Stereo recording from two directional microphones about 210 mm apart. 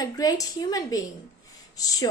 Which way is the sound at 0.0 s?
15° left (ahead or behind).